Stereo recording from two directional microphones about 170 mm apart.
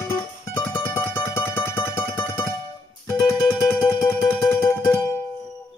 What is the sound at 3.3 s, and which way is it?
Music, 15° left (ahead or behind).